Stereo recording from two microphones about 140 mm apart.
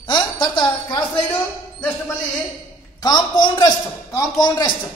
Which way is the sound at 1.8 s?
10° left (ahead or behind).